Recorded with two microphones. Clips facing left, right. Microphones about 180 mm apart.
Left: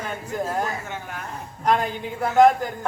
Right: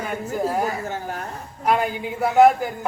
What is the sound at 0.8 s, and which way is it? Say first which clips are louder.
Speech: right 5 dB; 35° right (ahead or behind).